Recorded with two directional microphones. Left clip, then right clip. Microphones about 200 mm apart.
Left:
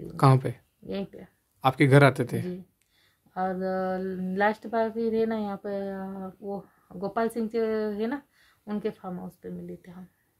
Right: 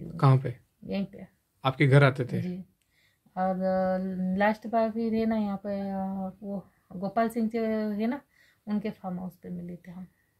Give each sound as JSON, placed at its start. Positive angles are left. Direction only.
{"t": 0.1, "sound": "speech", "side_deg": 30}
{"t": 1.6, "sound": "speech", "side_deg": 25}
{"t": 3.3, "sound": "speech", "side_deg": 15}